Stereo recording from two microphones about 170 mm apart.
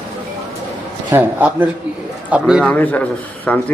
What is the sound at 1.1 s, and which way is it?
A man's voice, 10° right (ahead or behind).